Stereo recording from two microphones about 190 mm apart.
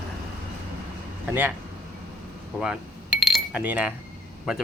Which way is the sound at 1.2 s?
10° right (ahead or behind).